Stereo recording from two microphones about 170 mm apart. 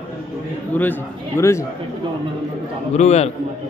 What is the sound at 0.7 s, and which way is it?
Speech, 10° left (ahead or behind).